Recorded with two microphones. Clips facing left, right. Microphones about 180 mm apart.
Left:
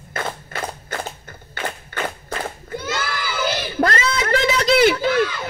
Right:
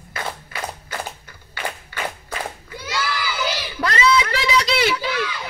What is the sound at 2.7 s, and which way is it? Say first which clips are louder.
Crowd: left 1 dB; 50° left (ahead or behind).